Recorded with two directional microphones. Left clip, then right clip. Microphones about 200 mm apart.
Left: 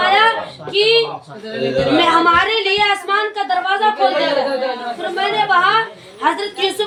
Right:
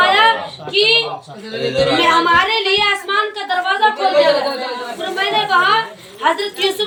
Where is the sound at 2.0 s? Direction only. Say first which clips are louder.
Left 1 dB; 15° left (ahead or behind).